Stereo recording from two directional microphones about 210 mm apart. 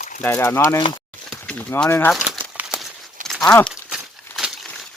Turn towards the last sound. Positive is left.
turn(degrees=0)  # may be behind; listen again after turning